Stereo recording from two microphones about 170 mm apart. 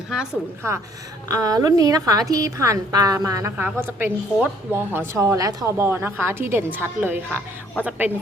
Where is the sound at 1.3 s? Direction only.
20° right (ahead or behind).